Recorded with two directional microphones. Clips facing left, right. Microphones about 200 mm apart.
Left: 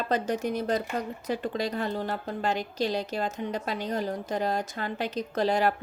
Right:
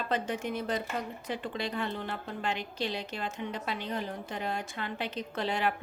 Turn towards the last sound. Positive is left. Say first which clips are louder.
# left 6 dB
turn(degrees=40)  # may be behind; listen again after turning